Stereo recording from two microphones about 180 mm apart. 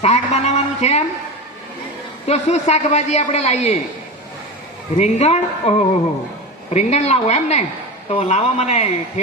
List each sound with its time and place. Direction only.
0.0 s a man's voice: 35° left (ahead or behind)
2.2 s a man's voice: 35° left (ahead or behind)
4.9 s a man's voice: 35° left (ahead or behind)
6.7 s a man's voice: 35° left (ahead or behind)